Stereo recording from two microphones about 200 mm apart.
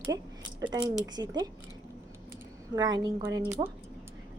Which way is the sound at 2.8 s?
20° right (ahead or behind).